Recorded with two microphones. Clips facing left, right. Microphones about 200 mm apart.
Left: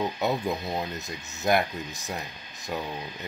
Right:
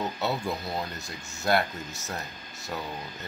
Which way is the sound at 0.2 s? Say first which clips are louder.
Left 3 dB; 15° left (ahead or behind).